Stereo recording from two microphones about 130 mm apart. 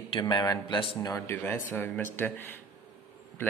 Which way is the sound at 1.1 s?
15° left (ahead or behind).